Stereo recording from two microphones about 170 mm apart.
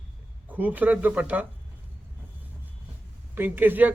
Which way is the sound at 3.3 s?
10° right (ahead or behind).